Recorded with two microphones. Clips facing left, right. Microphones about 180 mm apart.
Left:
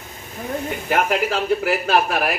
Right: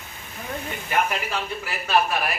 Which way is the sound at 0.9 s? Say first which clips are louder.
Left 5 dB; 65° left (ahead or behind).